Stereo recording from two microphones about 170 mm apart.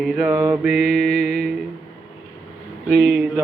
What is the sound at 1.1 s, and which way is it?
Music, 65° right (ahead or behind).